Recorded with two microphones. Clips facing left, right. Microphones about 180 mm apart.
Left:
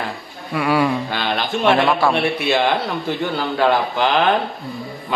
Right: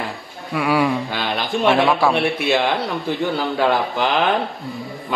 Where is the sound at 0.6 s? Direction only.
5° right (ahead or behind).